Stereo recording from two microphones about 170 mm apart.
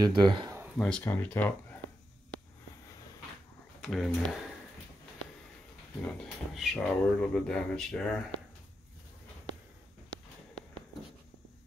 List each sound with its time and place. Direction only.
0.0 s speech: 25° right (ahead or behind)
0.7 s speech: 5° left (ahead or behind)
3.8 s speech: centre (ahead or behind)
6.0 s speech: centre (ahead or behind)